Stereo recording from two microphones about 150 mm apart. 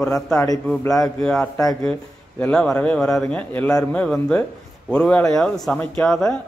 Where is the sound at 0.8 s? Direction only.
25° left (ahead or behind).